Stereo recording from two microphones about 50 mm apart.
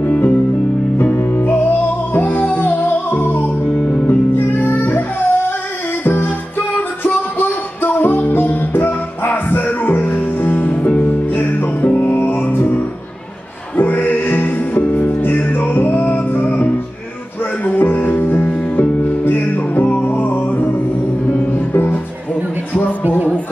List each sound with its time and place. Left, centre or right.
0.0 s music: left
6.0 s music: left
22.7 s music: left